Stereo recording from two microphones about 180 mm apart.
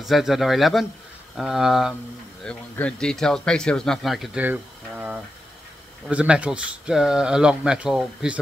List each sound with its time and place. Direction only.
0.0 s speech: centre (ahead or behind)